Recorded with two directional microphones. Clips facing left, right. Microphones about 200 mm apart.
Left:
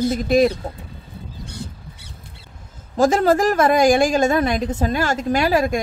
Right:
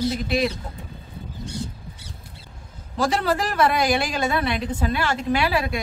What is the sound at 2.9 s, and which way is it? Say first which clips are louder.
A woman's voice: left 7 dB; 45° left (ahead or behind).